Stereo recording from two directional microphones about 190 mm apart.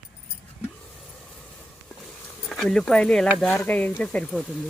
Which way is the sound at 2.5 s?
Centre (ahead or behind).